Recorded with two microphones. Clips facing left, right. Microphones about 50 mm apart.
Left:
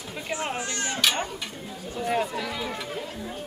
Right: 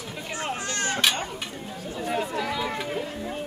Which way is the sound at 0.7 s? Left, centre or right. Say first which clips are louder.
Right 2 dB; right.